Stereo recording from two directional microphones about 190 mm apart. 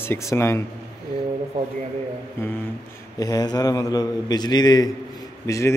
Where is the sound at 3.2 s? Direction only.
20° left (ahead or behind).